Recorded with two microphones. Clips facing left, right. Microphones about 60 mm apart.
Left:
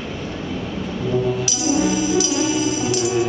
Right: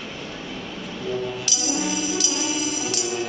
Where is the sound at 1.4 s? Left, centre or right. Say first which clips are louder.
Left 7 dB; centre.